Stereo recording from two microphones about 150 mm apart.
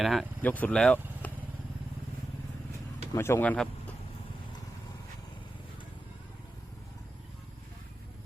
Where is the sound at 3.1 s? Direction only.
15° left (ahead or behind).